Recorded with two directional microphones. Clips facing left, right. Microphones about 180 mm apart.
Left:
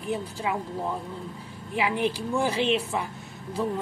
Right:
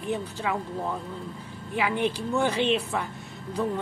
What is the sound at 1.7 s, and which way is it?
Speech, centre (ahead or behind).